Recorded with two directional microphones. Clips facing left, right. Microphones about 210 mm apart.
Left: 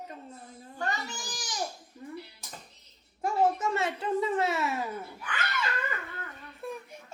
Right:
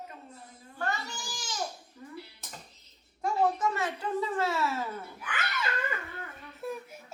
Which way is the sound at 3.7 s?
25° left (ahead or behind).